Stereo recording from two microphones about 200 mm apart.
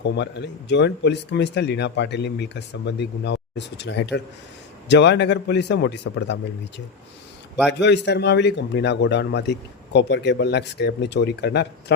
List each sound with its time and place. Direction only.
0.0 s a man's voice: 60° left (ahead or behind)
7.7 s a man's voice: 60° left (ahead or behind)